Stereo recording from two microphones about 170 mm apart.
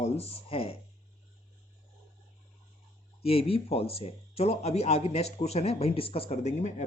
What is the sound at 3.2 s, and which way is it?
A man's voice, 35° left (ahead or behind).